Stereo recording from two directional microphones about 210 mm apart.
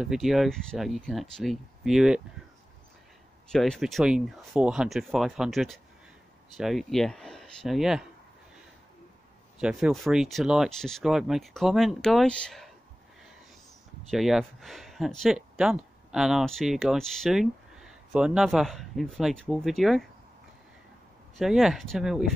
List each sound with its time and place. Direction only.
0.0 s speech: centre (ahead or behind)
3.4 s speech: 5° left (ahead or behind)
9.6 s speech: 5° right (ahead or behind)
14.1 s speech: centre (ahead or behind)
21.4 s speech: centre (ahead or behind)